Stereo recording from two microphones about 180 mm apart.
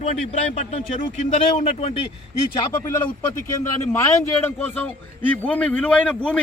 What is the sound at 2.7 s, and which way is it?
A man's voice, 10° left (ahead or behind).